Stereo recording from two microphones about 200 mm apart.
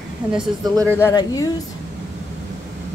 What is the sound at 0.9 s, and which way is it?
Speech, 15° left (ahead or behind).